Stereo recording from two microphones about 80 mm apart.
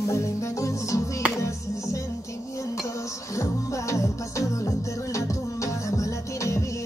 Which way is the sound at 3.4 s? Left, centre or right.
Left.